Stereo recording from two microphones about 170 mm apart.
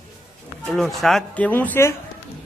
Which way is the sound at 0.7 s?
Centre (ahead or behind).